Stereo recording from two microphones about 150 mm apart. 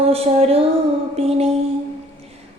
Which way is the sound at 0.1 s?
45° right (ahead or behind).